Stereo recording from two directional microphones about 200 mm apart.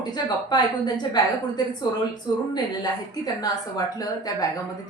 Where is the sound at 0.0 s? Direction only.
20° left (ahead or behind).